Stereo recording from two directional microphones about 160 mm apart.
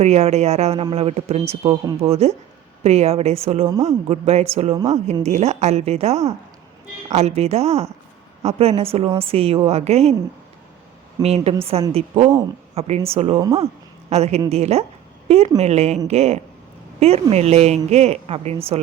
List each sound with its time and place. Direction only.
0.0 s a woman's voice: 40° right (ahead or behind)
11.2 s a woman's voice: 40° right (ahead or behind)